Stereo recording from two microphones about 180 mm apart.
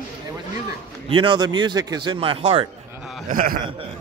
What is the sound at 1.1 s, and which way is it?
A man's voice, 25° right (ahead or behind).